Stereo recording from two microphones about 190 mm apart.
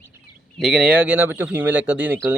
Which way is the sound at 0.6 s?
Centre (ahead or behind).